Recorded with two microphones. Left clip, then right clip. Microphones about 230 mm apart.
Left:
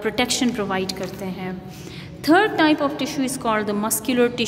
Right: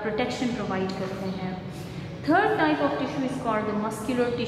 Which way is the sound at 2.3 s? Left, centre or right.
Left.